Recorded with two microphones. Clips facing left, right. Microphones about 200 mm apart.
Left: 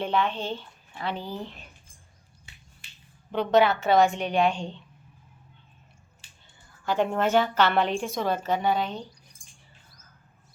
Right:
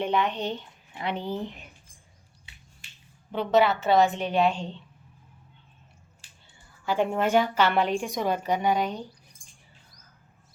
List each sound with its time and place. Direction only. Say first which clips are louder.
0.0 s a woman's voice: right 1 dB; 15° right (ahead or behind)
3.3 s a woman's voice: left 1 dB; 5° right (ahead or behind)
6.8 s a woman's voice: even; 10° right (ahead or behind)